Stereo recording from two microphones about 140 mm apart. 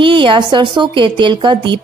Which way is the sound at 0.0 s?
35° right (ahead or behind).